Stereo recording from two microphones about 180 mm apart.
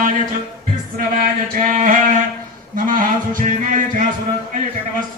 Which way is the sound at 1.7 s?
45° right (ahead or behind).